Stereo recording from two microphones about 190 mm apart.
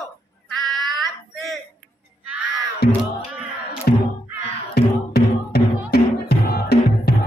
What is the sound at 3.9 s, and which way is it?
Music, 50° left (ahead or behind).